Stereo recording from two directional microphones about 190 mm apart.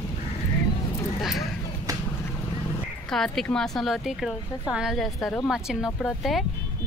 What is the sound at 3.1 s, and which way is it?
A woman's voice, centre (ahead or behind).